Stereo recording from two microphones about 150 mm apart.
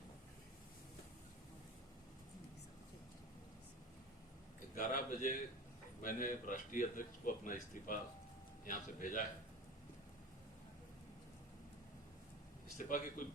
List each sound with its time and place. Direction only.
4.7 s speech: 65° left (ahead or behind)
12.7 s speech: 60° left (ahead or behind)